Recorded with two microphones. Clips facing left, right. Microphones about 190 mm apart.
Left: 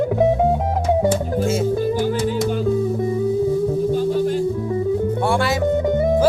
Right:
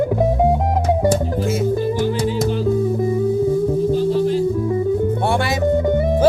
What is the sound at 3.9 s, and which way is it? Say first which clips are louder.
Music: right 2 dB; 50° left (ahead or behind).